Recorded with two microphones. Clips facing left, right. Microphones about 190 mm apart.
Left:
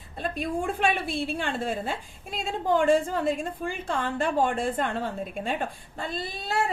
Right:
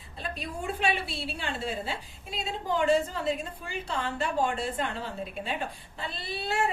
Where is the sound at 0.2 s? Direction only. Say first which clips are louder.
Left 7 dB; 50° left (ahead or behind).